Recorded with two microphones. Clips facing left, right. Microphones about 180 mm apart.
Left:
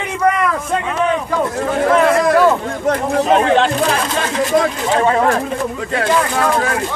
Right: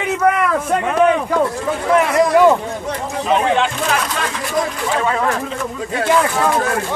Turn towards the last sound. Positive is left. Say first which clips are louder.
# left 4 dB
turn(degrees=40)  # may be behind; listen again after turning